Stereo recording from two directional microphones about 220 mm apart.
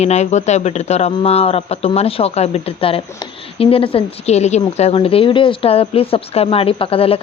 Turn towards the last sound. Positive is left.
turn(degrees=25)  # may be behind; listen again after turning